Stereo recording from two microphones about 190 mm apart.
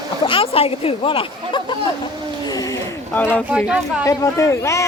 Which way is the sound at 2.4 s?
20° left (ahead or behind).